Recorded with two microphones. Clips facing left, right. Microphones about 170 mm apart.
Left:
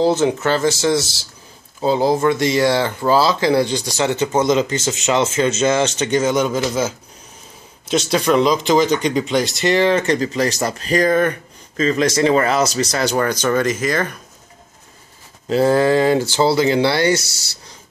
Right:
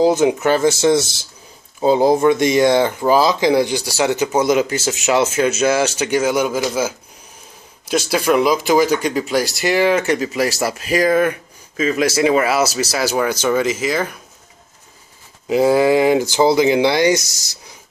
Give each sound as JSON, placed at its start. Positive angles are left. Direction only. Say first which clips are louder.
{"t": 0.0, "sound": "speech", "louder": "right 2 dB", "side_deg": -15}
{"t": 8.1, "sound": "speech", "louder": "even", "side_deg": -5}
{"t": 15.4, "sound": "speech", "louder": "right 1 dB", "side_deg": -10}